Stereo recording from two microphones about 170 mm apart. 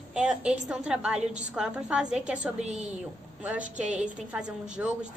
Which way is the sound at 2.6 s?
40° right (ahead or behind).